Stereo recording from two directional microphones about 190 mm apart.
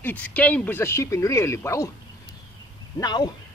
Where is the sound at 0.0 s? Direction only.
10° left (ahead or behind).